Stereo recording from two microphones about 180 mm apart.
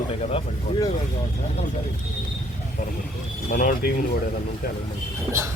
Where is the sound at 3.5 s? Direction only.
50° left (ahead or behind).